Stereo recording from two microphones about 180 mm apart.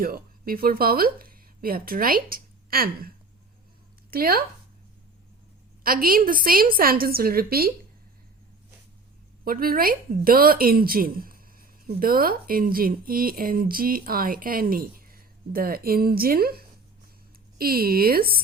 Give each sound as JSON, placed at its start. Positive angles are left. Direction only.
{"t": 0.0, "sound": "speech", "side_deg": -55}
{"t": 4.1, "sound": "a woman's voice", "side_deg": -55}
{"t": 5.8, "sound": "speech", "side_deg": -55}
{"t": 9.4, "sound": "a woman's voice", "side_deg": -55}